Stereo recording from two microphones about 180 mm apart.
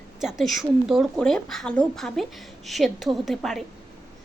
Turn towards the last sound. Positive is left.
turn(degrees=0)  # may be behind; listen again after turning